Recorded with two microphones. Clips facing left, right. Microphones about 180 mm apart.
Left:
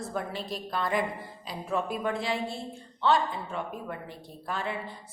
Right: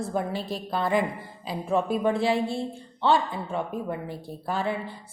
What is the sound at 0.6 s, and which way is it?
A woman's voice, 30° right (ahead or behind).